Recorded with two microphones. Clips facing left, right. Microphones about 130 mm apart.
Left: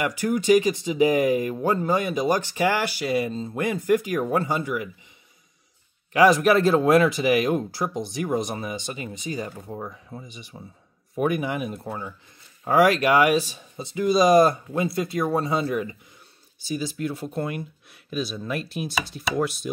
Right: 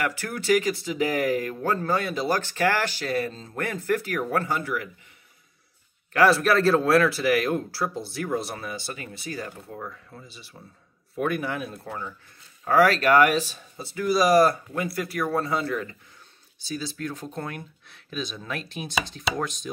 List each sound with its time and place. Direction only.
0.0 s speech: 15° left (ahead or behind)
6.1 s speech: 15° left (ahead or behind)